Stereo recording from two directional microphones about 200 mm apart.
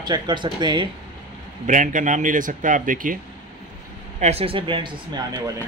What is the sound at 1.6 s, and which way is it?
Speech, 40° right (ahead or behind).